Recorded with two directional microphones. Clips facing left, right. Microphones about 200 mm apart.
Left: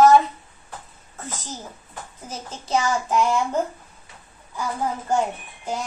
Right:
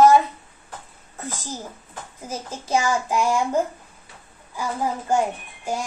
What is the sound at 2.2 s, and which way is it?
A child's voice, 10° right (ahead or behind).